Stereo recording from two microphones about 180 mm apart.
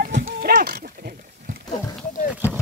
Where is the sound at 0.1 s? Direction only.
85° right.